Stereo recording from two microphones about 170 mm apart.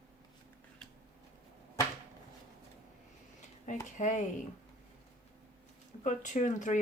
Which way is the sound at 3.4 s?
45° left (ahead or behind).